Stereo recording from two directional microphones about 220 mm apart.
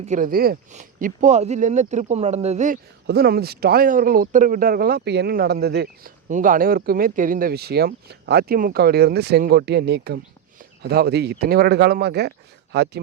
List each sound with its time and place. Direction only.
0.0 s speech: 35° right (ahead or behind)
3.1 s speech: 45° right (ahead or behind)